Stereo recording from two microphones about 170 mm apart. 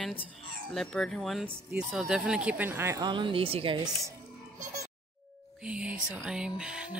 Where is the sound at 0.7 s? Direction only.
5° left (ahead or behind); by 4.1 s 25° right (ahead or behind).